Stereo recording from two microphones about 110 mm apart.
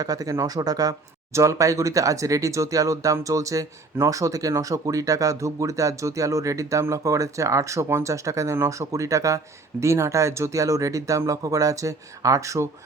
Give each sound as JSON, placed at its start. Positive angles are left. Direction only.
{"t": 0.0, "sound": "speech", "side_deg": -35}